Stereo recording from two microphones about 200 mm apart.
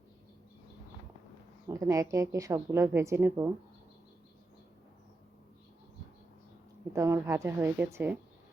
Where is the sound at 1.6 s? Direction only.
15° right (ahead or behind).